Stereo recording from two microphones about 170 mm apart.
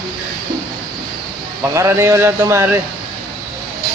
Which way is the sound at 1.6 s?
15° right (ahead or behind).